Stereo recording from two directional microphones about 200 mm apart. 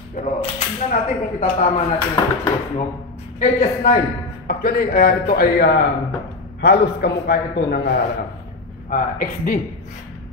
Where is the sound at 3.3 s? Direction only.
45° left (ahead or behind).